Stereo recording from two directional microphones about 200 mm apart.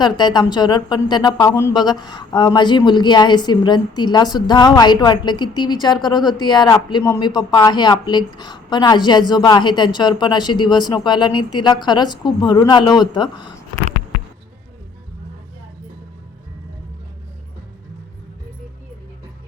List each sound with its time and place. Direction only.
0.0 s speech: 20° left (ahead or behind)